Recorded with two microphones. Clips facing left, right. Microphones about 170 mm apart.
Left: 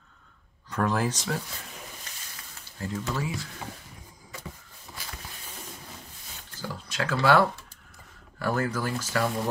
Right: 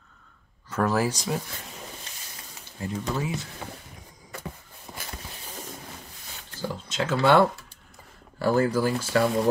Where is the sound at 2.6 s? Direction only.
15° right (ahead or behind).